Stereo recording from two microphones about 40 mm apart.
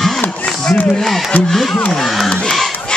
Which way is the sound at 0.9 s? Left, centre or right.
Centre.